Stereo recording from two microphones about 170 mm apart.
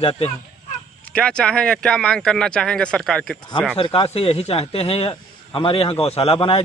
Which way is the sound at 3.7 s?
35° left (ahead or behind).